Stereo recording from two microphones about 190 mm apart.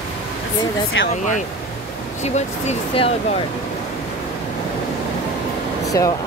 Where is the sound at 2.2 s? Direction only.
35° left (ahead or behind).